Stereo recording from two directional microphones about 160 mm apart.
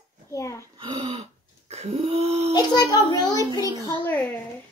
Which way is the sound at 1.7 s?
40° right (ahead or behind).